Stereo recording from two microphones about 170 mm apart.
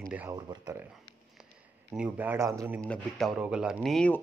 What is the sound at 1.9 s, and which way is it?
Speech, 5° right (ahead or behind).